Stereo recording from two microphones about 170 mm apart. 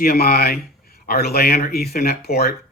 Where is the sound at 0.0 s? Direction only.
60° left (ahead or behind).